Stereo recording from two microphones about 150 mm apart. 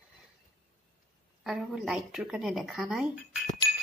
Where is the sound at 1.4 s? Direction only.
5° right (ahead or behind).